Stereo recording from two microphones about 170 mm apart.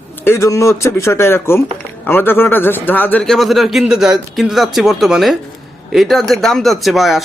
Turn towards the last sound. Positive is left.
turn(degrees=0)  # may be behind; listen again after turning